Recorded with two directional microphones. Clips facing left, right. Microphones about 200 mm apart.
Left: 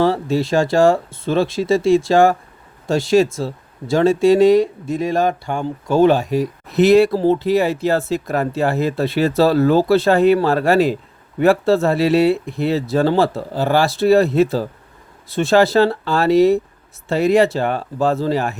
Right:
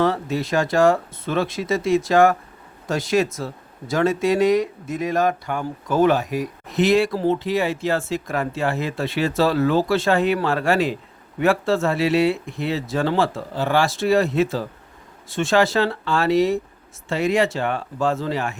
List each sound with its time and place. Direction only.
0.0 s speech: 30° left (ahead or behind)